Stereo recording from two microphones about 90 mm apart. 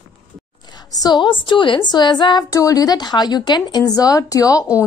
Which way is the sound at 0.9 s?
50° left (ahead or behind).